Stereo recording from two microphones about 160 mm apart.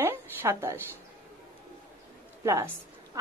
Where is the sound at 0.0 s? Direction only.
15° right (ahead or behind).